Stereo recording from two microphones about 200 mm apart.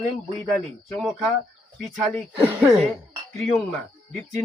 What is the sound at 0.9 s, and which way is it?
Speech, centre (ahead or behind).